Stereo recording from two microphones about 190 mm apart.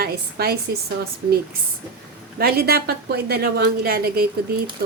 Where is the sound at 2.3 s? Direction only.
55° right (ahead or behind).